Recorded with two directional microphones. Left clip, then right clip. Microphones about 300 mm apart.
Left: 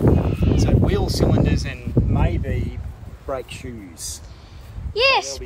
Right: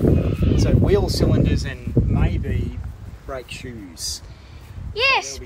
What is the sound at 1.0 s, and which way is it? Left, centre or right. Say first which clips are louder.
Speech: left 1 dB; centre.